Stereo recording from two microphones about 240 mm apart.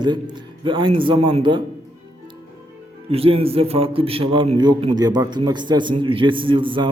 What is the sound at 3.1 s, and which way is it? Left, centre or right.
A man's voice, right.